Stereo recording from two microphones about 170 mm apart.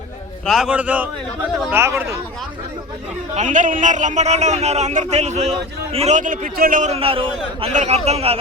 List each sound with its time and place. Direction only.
0.4 s a man's voice: centre (ahead or behind)
3.3 s a man's voice: 45° right (ahead or behind)
6.9 s a man's voice: 35° right (ahead or behind)